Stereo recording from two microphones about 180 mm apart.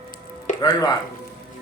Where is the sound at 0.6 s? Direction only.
20° left (ahead or behind).